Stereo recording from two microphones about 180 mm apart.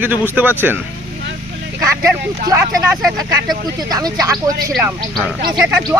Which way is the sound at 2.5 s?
15° right (ahead or behind).